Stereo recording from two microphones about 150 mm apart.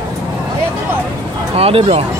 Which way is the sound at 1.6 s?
40° right (ahead or behind).